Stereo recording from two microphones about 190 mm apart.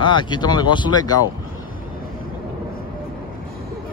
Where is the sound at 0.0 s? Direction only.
25° left (ahead or behind).